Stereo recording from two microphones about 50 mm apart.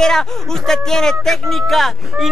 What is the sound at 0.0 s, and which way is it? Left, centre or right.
Speech, centre.